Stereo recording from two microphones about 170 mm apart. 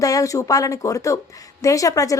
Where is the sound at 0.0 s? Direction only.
20° left (ahead or behind).